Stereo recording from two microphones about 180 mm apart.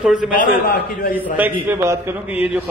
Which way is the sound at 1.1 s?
10° right (ahead or behind).